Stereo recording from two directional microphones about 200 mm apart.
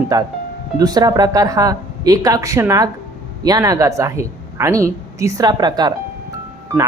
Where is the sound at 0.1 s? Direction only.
20° right (ahead or behind).